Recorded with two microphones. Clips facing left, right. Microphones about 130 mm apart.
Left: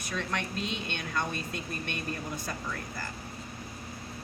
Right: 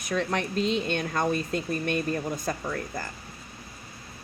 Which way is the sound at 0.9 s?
45° right (ahead or behind).